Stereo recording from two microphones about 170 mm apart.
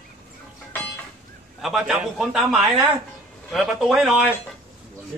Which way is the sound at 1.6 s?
5° right (ahead or behind).